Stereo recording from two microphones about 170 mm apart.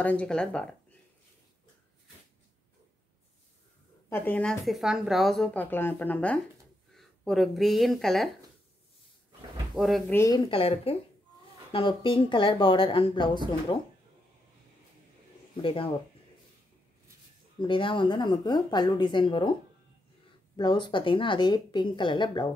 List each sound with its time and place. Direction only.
0.0 s speech: 10° left (ahead or behind)
4.1 s speech: 5° left (ahead or behind)
9.8 s speech: centre (ahead or behind)
10.1 s a woman's voice: 20° left (ahead or behind)
10.5 s a woman's voice: 35° left (ahead or behind)
15.6 s speech: 30° left (ahead or behind)
17.6 s a woman's voice: 30° left (ahead or behind)
20.5 s a woman's voice: 25° left (ahead or behind)